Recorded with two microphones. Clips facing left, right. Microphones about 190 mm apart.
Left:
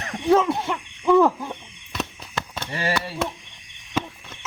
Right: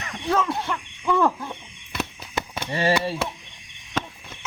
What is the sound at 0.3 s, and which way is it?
Speech, 20° left (ahead or behind).